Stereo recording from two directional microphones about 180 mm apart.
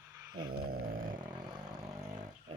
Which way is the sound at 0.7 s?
50° right (ahead or behind).